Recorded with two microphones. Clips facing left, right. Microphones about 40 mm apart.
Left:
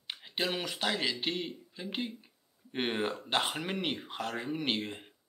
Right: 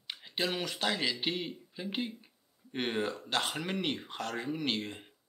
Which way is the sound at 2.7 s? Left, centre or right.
Centre.